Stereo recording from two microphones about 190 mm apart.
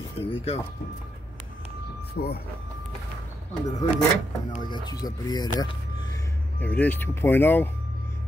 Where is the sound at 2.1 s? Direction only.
55° left (ahead or behind).